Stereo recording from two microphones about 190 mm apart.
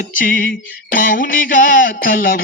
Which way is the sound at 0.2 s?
45° left (ahead or behind).